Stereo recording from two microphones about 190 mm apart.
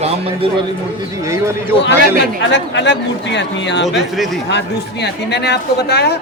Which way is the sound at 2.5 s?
70° left (ahead or behind).